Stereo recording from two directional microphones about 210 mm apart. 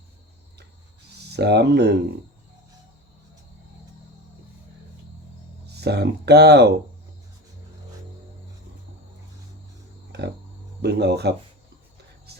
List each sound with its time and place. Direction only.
1.3 s speech: 50° right (ahead or behind)
5.6 s speech: 50° right (ahead or behind)
10.1 s a sound: 50° right (ahead or behind)
10.8 s speech: 50° right (ahead or behind)